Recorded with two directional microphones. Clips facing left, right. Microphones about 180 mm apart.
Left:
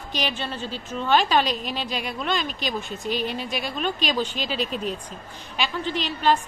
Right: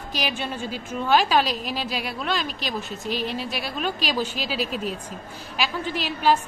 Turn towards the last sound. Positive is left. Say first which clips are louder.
# even
turn(degrees=-5)  # may be behind; listen again after turning